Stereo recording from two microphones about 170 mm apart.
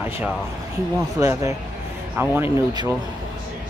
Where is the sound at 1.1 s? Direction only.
20° right (ahead or behind).